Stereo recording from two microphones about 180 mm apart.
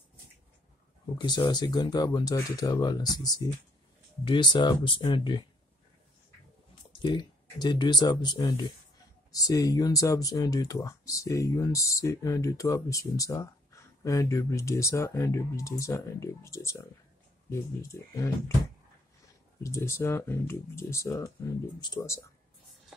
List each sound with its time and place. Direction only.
1.1 s speech: 25° left (ahead or behind)
6.7 s speech: 25° left (ahead or behind)
19.6 s speech: 15° left (ahead or behind)